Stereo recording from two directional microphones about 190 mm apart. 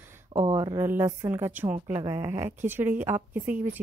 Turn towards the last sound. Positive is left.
turn(degrees=-10)  # may be behind; listen again after turning